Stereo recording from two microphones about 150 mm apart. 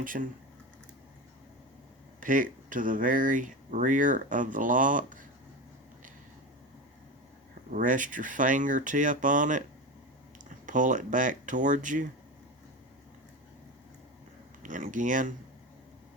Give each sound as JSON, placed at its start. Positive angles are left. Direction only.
{"t": 0.0, "sound": "speech", "side_deg": -65}
{"t": 2.2, "sound": "speech", "side_deg": -60}
{"t": 7.7, "sound": "speech", "side_deg": -60}
{"t": 10.7, "sound": "speech", "side_deg": -60}
{"t": 14.6, "sound": "speech", "side_deg": -60}